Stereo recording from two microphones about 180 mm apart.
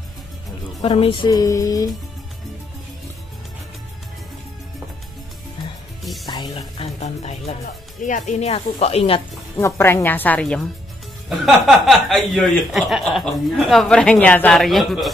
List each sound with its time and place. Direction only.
0.8 s music: 30° left (ahead or behind)
6.2 s speech: 25° left (ahead or behind)
9.6 s speech: 15° left (ahead or behind)